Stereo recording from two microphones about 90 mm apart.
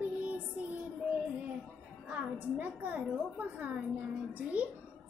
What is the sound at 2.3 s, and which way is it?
A woman's voice, 20° right (ahead or behind).